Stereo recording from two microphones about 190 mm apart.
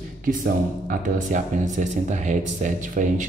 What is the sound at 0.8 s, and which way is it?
Speech, 45° right (ahead or behind).